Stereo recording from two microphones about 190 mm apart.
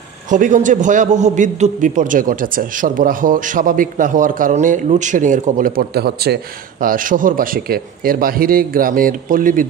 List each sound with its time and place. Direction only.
0.3 s a man's voice: 40° right (ahead or behind)